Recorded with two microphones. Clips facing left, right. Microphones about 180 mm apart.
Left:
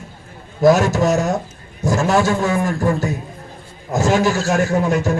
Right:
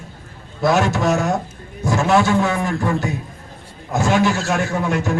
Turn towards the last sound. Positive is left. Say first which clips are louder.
# left 3 dB
turn(degrees=40)  # may be behind; listen again after turning